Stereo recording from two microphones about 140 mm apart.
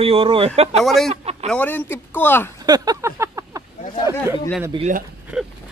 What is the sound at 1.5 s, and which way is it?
Speech, 10° left (ahead or behind).